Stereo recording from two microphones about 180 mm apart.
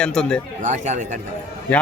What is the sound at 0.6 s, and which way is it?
Speech, 40° right (ahead or behind).